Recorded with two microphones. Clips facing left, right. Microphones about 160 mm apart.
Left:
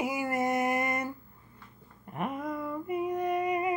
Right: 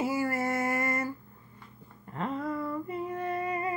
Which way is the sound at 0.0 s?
20° left (ahead or behind).